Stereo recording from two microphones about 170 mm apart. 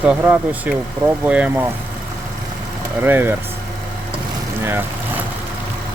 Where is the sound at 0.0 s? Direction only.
10° right (ahead or behind).